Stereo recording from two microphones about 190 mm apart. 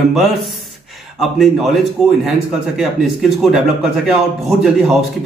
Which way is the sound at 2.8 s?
5° right (ahead or behind).